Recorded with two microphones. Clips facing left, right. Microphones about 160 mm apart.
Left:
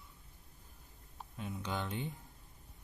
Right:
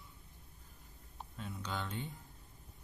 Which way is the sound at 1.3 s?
15° left (ahead or behind).